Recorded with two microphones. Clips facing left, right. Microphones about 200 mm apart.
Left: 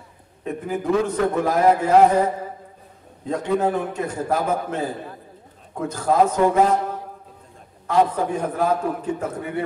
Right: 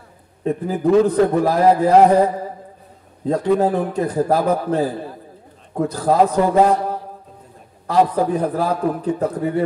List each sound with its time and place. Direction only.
0.4 s a man's voice: 35° right (ahead or behind)
7.8 s a man's voice: 35° right (ahead or behind)